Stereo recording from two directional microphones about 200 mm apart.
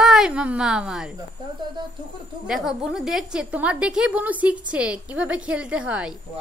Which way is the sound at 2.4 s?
Centre (ahead or behind).